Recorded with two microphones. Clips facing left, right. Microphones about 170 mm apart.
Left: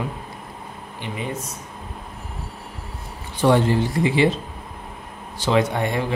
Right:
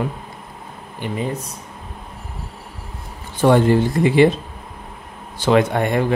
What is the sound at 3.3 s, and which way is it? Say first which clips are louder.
Speech: right 4 dB; 50° right (ahead or behind).